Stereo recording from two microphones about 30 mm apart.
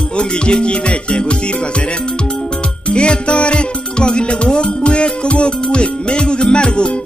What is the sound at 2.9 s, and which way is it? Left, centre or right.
Music, left.